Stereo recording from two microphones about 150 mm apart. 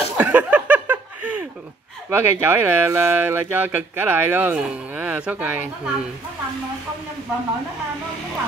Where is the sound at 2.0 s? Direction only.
15° right (ahead or behind).